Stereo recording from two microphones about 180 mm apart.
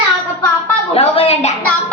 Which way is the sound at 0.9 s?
35° left (ahead or behind).